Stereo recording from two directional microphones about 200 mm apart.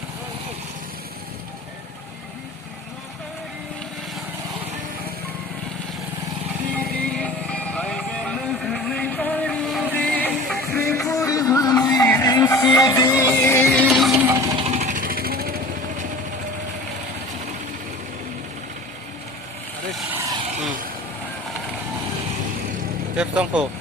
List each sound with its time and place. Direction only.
7.0 s music: 5° left (ahead or behind)
13.7 s a sound: centre (ahead or behind)
14.3 s jackhammer: 15° right (ahead or behind)
14.6 s vehicle: 35° right (ahead or behind)
19.9 s vehicle: centre (ahead or behind)
23.1 s vehicle: 5° right (ahead or behind)